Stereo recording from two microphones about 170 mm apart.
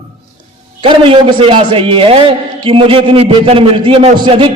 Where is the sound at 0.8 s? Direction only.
30° right (ahead or behind).